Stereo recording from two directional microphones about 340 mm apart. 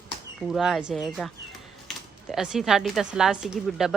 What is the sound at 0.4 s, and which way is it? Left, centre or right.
Speech, centre.